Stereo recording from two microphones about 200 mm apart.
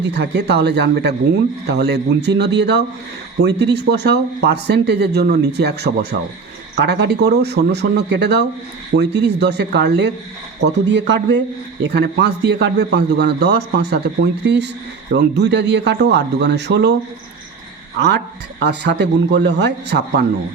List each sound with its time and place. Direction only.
0.0 s a man's voice: 60° right (ahead or behind)
18.6 s a man's voice: 60° right (ahead or behind)